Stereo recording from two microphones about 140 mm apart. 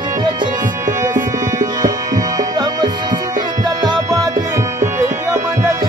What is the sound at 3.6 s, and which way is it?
Music, 30° right (ahead or behind).